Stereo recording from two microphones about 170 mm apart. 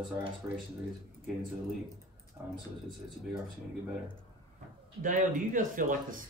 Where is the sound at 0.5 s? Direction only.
15° right (ahead or behind).